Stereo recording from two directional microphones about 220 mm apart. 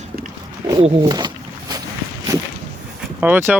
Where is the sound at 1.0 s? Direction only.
20° right (ahead or behind).